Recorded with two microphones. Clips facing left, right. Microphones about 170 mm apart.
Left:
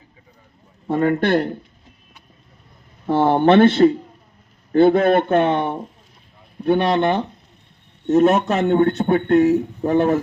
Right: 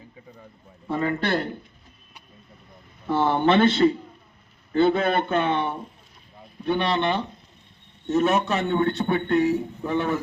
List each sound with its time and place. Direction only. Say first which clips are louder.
0.9 s a man's voice: left 7 dB; 50° left (ahead or behind)
3.1 s a man's voice: left 6 dB; 50° left (ahead or behind)